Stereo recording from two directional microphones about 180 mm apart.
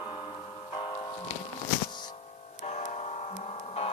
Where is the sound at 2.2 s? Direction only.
35° left (ahead or behind).